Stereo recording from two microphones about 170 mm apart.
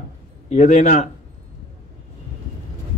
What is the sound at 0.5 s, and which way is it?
Speech, 40° left (ahead or behind).